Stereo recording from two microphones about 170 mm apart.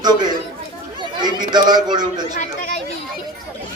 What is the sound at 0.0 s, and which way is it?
Speech, 25° right (ahead or behind).